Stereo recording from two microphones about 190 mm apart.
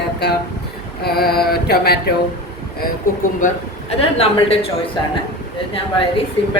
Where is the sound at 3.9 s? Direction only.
30° left (ahead or behind).